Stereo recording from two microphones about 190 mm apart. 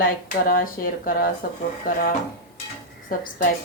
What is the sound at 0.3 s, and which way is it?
Speech, 45° left (ahead or behind).